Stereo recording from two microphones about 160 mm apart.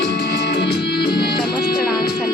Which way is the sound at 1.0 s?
30° left (ahead or behind).